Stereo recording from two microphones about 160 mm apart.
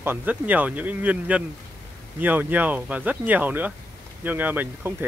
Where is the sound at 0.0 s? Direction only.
10° right (ahead or behind).